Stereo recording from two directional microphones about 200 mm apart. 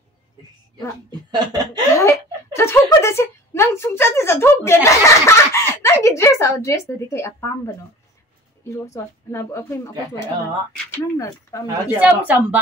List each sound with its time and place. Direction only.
1.3 s chuckle: 20° right (ahead or behind)
2.0 s a woman's voice: 15° left (ahead or behind)
11.6 s a woman's voice: 10° right (ahead or behind)